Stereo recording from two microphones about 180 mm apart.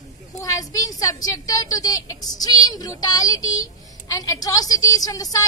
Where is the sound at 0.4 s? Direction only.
20° left (ahead or behind).